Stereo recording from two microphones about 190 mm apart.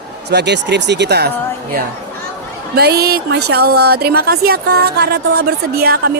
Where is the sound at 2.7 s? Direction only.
55° right (ahead or behind).